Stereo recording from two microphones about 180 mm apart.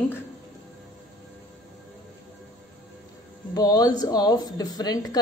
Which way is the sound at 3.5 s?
20° left (ahead or behind).